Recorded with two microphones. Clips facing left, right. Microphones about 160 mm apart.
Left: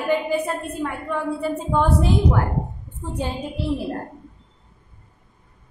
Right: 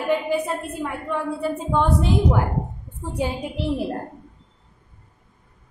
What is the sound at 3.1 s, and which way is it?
Speech, 10° right (ahead or behind).